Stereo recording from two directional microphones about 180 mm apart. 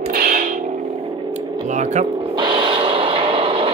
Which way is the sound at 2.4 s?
30° right (ahead or behind).